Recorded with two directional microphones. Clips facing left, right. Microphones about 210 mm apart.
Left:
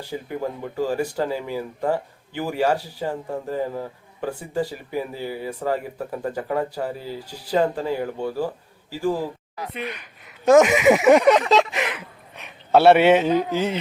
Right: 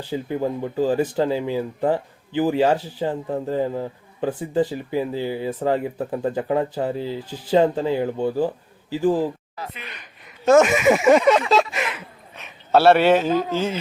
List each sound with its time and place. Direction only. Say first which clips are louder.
0.1 s a man's voice: right 5 dB; 15° right (ahead or behind)
9.8 s a man's voice: left 9 dB; 10° left (ahead or behind)